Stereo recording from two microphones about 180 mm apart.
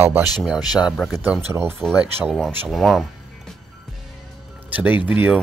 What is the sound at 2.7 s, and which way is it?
Speech, centre (ahead or behind).